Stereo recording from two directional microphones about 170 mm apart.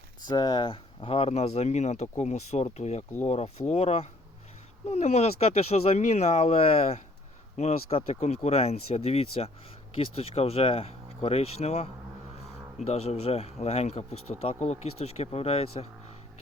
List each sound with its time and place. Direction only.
0.2 s speech: 25° left (ahead or behind)
12.9 s speech: 40° left (ahead or behind)